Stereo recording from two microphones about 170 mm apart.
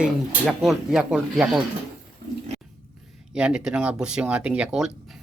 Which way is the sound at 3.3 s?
5° right (ahead or behind).